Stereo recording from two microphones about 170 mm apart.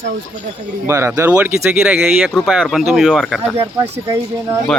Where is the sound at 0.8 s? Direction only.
15° right (ahead or behind).